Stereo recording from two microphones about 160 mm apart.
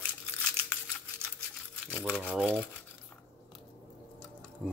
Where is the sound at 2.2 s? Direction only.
10° right (ahead or behind).